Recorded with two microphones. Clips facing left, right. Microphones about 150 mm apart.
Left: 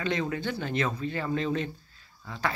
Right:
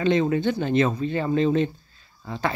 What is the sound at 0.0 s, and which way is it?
Speech, 25° right (ahead or behind).